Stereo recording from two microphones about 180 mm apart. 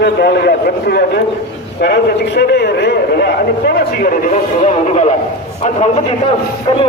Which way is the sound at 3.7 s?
45° left (ahead or behind).